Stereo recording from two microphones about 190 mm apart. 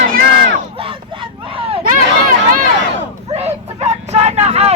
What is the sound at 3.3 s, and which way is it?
Vehicle, 35° right (ahead or behind).